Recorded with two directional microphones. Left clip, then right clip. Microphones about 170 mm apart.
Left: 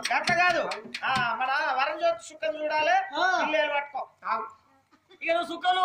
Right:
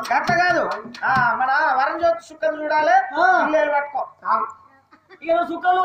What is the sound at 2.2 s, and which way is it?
Child singing, 50° left (ahead or behind).